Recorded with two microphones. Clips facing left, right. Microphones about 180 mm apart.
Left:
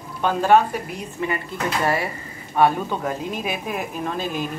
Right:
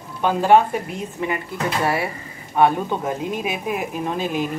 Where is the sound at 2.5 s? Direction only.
15° right (ahead or behind).